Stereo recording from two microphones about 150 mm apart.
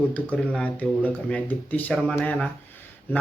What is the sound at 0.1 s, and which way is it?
Speech, 5° left (ahead or behind).